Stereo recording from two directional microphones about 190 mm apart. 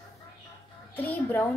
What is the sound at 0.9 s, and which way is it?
Speech, 10° left (ahead or behind).